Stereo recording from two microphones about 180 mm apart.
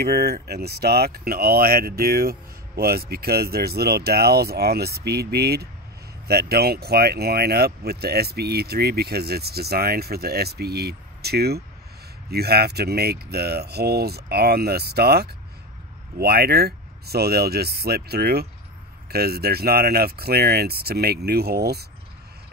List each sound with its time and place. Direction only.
0.0 s speech: 60° right (ahead or behind)